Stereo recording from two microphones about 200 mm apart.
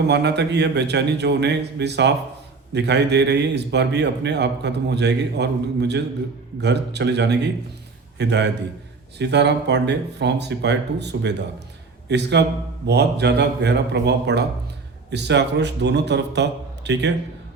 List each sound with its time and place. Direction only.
0.1 s a man's voice: 60° right (ahead or behind)